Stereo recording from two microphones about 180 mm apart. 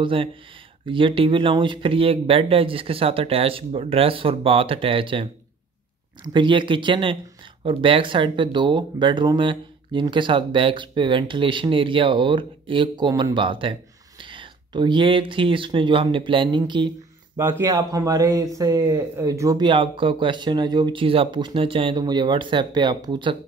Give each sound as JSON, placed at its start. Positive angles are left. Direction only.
{"t": 0.0, "sound": "speech", "side_deg": -30}